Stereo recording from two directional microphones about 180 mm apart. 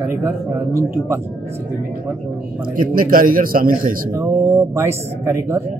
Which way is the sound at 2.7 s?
50° right (ahead or behind).